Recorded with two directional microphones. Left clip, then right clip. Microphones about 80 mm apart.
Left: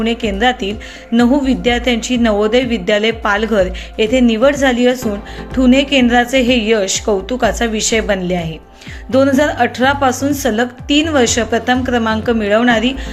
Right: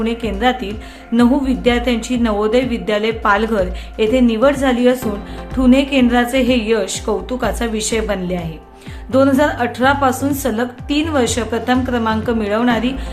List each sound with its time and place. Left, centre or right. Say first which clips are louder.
0.0 s a woman's voice: left 3 dB; left